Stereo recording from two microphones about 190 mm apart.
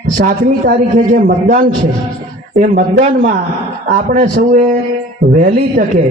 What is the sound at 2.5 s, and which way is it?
A man's voice, 40° right (ahead or behind).